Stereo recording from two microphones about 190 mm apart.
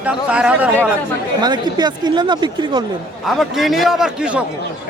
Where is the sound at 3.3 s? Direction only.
Centre (ahead or behind).